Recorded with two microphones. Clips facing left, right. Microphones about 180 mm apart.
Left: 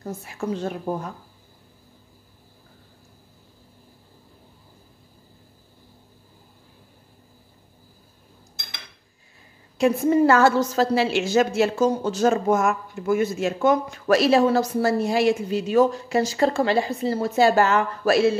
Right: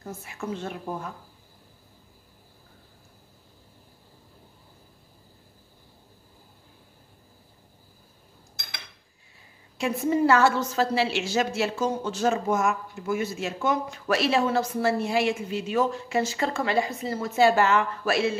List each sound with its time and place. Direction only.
0.4 s speech: 35° left (ahead or behind)
10.0 s speech: 45° left (ahead or behind)
14.0 s speech: 40° left (ahead or behind)